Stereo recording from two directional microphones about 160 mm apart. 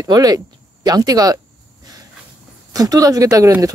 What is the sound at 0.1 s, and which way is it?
Speech, 25° right (ahead or behind).